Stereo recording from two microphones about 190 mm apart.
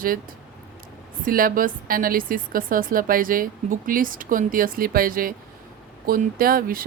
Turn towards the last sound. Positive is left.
turn(degrees=-50)  # may be behind; listen again after turning